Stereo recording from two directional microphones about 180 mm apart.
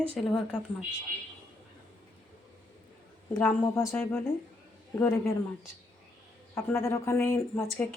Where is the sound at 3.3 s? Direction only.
10° left (ahead or behind).